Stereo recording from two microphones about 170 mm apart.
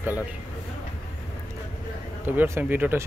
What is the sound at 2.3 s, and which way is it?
Speech, 10° right (ahead or behind).